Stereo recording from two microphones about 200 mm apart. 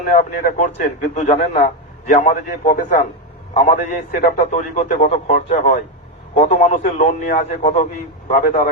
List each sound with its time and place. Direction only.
0.0 s a man's voice: 40° left (ahead or behind)